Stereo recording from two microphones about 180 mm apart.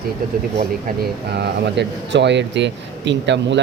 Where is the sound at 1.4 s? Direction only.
65° right (ahead or behind).